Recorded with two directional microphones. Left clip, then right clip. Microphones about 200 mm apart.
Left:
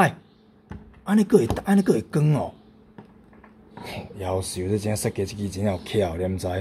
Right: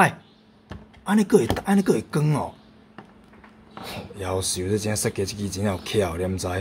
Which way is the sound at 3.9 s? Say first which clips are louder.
Left 1 dB; centre (ahead or behind).